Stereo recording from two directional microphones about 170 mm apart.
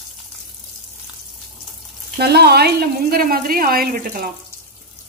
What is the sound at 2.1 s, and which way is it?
Speech, 70° right (ahead or behind).